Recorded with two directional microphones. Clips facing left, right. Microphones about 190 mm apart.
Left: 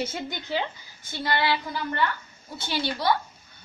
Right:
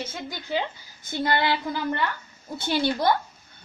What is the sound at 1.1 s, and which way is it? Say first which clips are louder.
Speech: right 2 dB; 50° right (ahead or behind).